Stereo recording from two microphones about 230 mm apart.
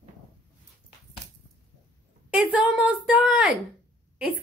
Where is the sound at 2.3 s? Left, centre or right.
Centre.